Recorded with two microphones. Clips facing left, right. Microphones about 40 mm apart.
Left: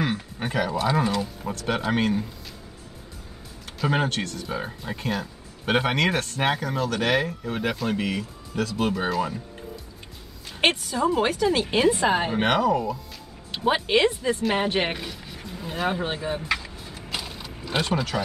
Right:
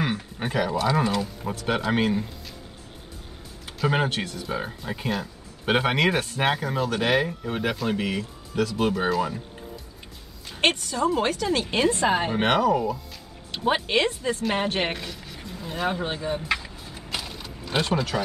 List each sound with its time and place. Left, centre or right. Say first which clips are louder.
0.0 s a sound: even; centre
0.9 s speech: even; centre
3.8 s speech: even; centre
10.6 s speech: left 1 dB; centre
16.4 s vehicle: even; centre
17.1 s mechanisms: even; centre